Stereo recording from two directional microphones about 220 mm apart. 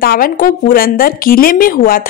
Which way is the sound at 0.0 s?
40° left (ahead or behind).